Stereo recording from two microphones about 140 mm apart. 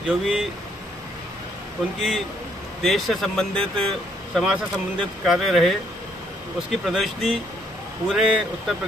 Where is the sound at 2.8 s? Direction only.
Centre (ahead or behind).